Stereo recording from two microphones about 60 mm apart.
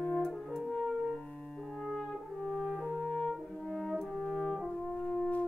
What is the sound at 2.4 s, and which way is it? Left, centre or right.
French horn, centre.